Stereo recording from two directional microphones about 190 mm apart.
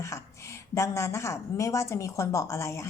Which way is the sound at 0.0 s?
15° left (ahead or behind).